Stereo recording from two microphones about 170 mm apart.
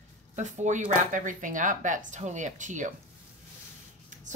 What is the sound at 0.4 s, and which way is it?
Speech, 45° right (ahead or behind).